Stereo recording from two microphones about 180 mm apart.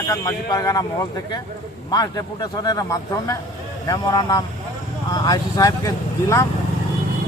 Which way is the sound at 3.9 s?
20° left (ahead or behind).